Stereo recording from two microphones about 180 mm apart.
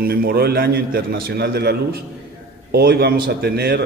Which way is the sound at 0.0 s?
55° right (ahead or behind).